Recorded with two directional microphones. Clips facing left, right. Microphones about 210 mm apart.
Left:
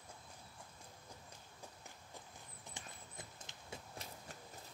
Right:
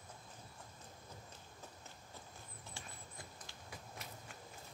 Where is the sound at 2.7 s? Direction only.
20° left (ahead or behind).